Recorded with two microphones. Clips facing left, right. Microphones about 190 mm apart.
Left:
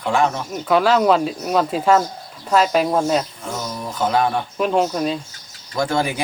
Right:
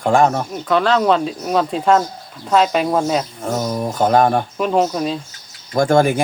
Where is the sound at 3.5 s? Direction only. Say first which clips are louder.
Right 11 dB; 50° right (ahead or behind).